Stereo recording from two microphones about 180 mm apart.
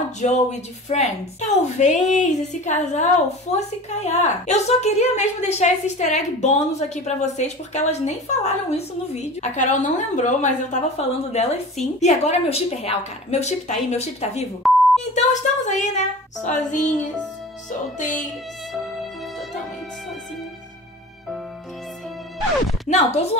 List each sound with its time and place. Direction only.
0.2 s a woman's voice: 40° left (ahead or behind)
14.6 s beep: centre (ahead or behind)
15.1 s a woman's voice: 40° left (ahead or behind)
16.4 s music: 45° left (ahead or behind)
22.8 s a woman's voice: 40° left (ahead or behind)